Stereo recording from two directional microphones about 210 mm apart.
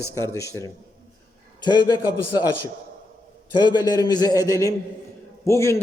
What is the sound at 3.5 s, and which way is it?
A man's voice, 20° left (ahead or behind).